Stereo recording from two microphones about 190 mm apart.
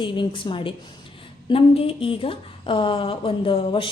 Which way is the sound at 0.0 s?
25° left (ahead or behind).